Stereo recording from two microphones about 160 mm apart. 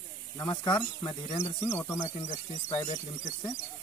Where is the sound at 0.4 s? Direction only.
25° left (ahead or behind).